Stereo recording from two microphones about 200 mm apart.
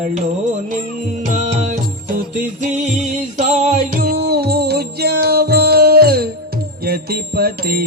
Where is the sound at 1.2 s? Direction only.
35° right (ahead or behind).